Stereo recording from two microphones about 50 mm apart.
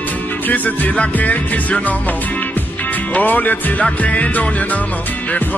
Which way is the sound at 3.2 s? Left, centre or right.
Left.